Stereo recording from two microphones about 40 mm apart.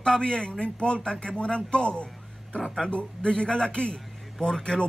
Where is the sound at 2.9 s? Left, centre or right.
Left.